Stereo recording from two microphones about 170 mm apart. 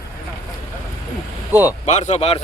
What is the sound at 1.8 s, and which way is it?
Speech, 45° left (ahead or behind).